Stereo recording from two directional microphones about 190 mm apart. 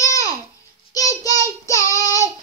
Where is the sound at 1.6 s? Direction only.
15° left (ahead or behind).